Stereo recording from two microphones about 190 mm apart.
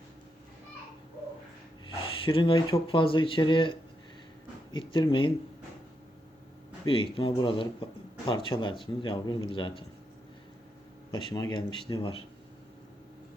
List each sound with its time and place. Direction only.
2.2 s speech: 25° left (ahead or behind)
6.8 s speech: 30° left (ahead or behind)
11.1 s speech: 20° left (ahead or behind)